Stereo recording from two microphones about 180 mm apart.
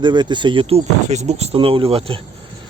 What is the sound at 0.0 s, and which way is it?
Speech, 25° right (ahead or behind).